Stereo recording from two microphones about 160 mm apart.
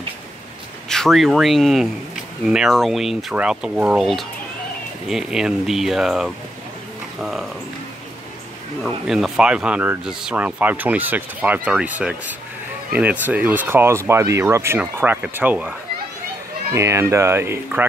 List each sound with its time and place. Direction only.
0.8 s speech: 5° left (ahead or behind)
8.8 s speech: 5° right (ahead or behind)
16.7 s speech: 15° right (ahead or behind)